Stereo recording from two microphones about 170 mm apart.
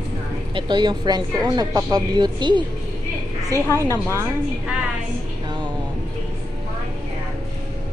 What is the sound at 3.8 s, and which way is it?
Speech, 15° right (ahead or behind).